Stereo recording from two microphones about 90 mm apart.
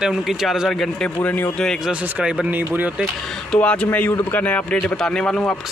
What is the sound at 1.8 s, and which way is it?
Speech, 10° right (ahead or behind).